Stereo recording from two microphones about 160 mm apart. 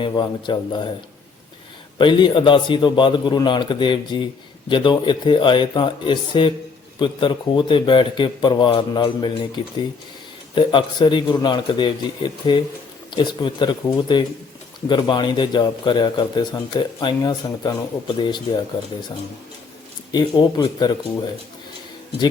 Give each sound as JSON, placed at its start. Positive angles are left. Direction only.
{"t": 0.1, "sound": "a man's voice", "side_deg": 25}
{"t": 2.0, "sound": "speech", "side_deg": 30}
{"t": 10.5, "sound": "a man's voice", "side_deg": 30}
{"t": 20.1, "sound": "a man's voice", "side_deg": 25}